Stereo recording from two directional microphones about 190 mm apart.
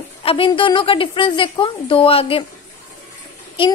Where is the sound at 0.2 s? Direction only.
30° left (ahead or behind).